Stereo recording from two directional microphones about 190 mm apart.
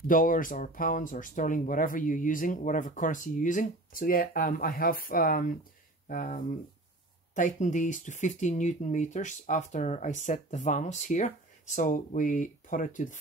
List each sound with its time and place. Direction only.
0.0 s speech: 45° left (ahead or behind)